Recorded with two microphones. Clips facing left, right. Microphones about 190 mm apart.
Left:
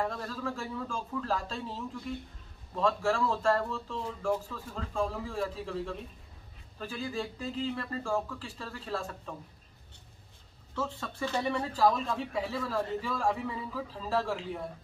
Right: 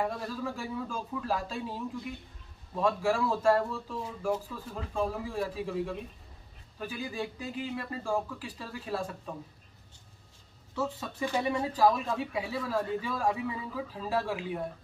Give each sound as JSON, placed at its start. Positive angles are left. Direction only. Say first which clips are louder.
{"t": 0.0, "sound": "speech", "louder": "right 1 dB", "side_deg": -10}
{"t": 10.7, "sound": "speech", "louder": "right 2 dB", "side_deg": -15}